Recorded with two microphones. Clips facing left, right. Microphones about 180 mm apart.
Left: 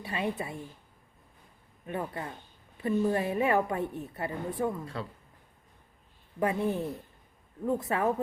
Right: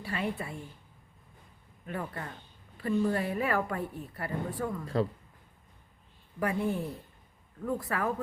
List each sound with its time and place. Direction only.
0.0 s a woman's voice: 20° left (ahead or behind)
1.9 s a woman's voice: 20° left (ahead or behind)
6.4 s a woman's voice: 20° left (ahead or behind)